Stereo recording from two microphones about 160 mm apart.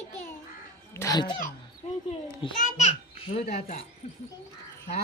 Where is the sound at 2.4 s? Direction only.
30° left (ahead or behind).